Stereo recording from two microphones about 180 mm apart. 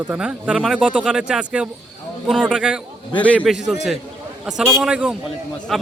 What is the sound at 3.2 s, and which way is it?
Speech, 10° left (ahead or behind).